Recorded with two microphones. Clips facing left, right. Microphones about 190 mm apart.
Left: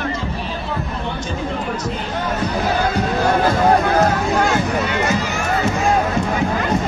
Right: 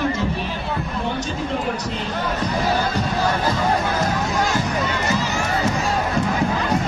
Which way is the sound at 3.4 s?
55° left (ahead or behind).